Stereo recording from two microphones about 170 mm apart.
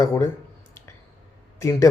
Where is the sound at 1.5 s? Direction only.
20° left (ahead or behind).